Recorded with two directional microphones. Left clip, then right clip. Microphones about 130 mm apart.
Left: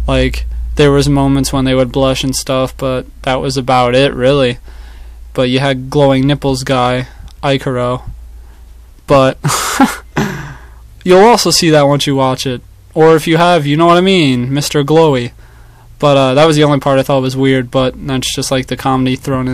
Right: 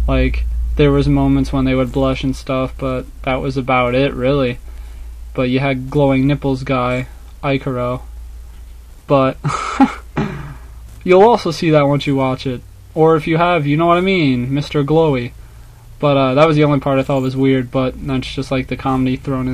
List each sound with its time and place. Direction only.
0.0 s speech: 30° left (ahead or behind)
9.0 s speech: 30° left (ahead or behind)